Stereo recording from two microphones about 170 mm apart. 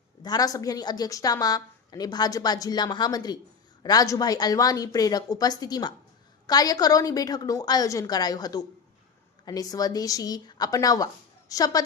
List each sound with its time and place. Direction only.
0.2 s a woman's voice: 20° left (ahead or behind)